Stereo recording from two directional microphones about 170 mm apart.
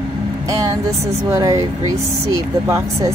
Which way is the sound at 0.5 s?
20° right (ahead or behind).